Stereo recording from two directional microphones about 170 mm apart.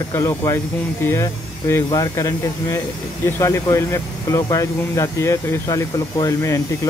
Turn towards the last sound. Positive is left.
turn(degrees=20)  # may be behind; listen again after turning